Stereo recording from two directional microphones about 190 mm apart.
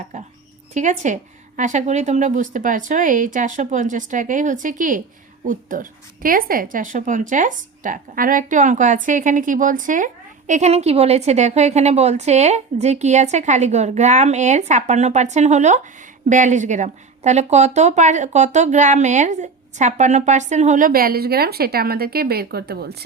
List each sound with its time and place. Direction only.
0.7 s a woman's voice: 40° right (ahead or behind); by 23.0 s 55° right (ahead or behind)